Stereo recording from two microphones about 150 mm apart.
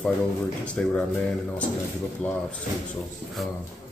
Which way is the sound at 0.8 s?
10° left (ahead or behind).